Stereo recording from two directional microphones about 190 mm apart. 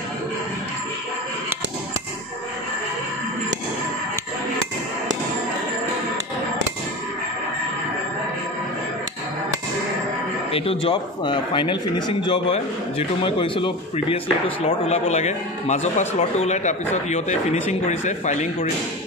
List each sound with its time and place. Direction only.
10.5 s speech: 30° left (ahead or behind)